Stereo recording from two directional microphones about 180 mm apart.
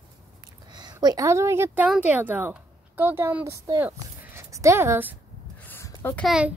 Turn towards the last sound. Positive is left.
turn(degrees=-5)  # may be behind; listen again after turning